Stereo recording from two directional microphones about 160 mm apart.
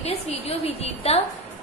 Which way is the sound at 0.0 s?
40° left (ahead or behind).